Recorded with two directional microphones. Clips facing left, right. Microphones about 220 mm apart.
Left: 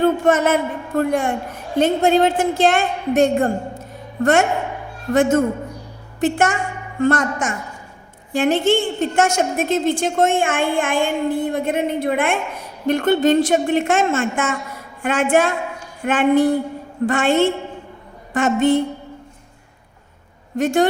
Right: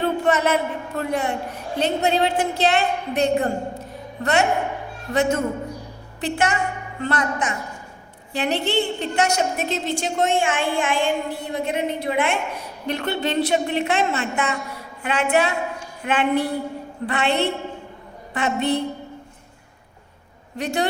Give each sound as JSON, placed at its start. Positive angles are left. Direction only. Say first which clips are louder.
{"t": 0.0, "sound": "a man's voice", "louder": "left 5 dB", "side_deg": 50}
{"t": 3.2, "sound": "music", "louder": "left 4 dB", "side_deg": 50}
{"t": 5.1, "sound": "a woman's voice", "louder": "left 5 dB", "side_deg": 50}
{"t": 20.6, "sound": "a woman's voice", "louder": "left 7 dB", "side_deg": 50}